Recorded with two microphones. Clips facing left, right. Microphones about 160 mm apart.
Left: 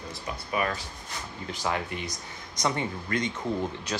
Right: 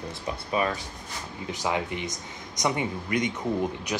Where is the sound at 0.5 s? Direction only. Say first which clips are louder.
Right 2 dB; 20° right (ahead or behind).